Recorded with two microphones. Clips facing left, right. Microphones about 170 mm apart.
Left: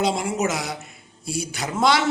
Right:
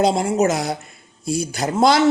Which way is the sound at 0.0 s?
40° right (ahead or behind).